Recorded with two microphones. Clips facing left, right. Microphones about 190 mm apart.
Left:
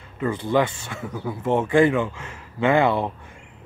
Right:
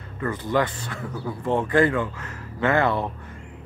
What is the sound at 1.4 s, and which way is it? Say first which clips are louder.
Speech: left 2 dB; 25° left (ahead or behind).